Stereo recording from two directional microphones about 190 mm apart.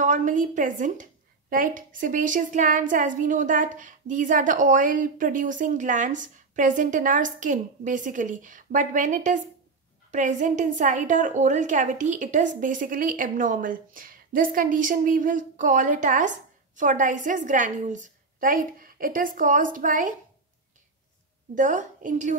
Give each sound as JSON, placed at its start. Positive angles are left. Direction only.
{"t": 0.0, "sound": "a woman's voice", "side_deg": -40}
{"t": 21.5, "sound": "a woman's voice", "side_deg": -40}